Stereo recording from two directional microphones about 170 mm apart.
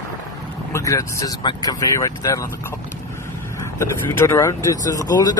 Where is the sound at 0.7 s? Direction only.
20° left (ahead or behind).